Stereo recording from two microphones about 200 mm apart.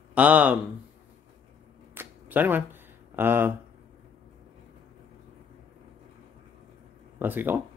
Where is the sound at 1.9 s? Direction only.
10° right (ahead or behind).